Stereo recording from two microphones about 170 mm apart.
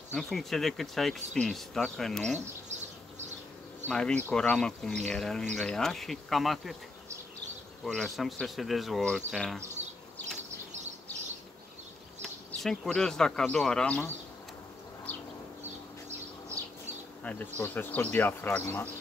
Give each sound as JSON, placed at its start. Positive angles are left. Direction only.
{"t": 0.1, "sound": "speech", "side_deg": 0}
{"t": 2.3, "sound": "a sound", "side_deg": -40}
{"t": 3.9, "sound": "speech", "side_deg": 5}
{"t": 7.8, "sound": "speech", "side_deg": 0}
{"t": 12.2, "sound": "speech", "side_deg": 0}
{"t": 17.2, "sound": "speech", "side_deg": 5}